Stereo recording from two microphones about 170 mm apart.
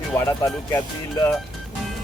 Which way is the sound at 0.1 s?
15° left (ahead or behind).